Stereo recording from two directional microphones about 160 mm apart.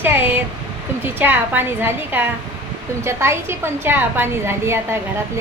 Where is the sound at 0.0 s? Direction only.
10° right (ahead or behind).